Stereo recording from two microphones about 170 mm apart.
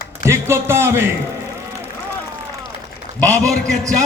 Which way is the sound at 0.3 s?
15° right (ahead or behind).